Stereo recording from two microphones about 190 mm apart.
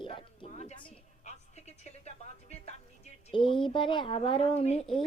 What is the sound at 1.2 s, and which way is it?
Music, 35° left (ahead or behind).